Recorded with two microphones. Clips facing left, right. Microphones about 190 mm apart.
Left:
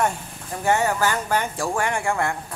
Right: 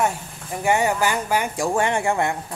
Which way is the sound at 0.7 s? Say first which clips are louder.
Right 1 dB; 15° right (ahead or behind).